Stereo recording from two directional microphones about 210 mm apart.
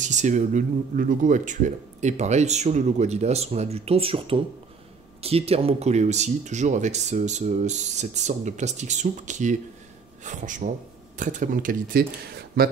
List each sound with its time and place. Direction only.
0.0 s speech: 35° right (ahead or behind)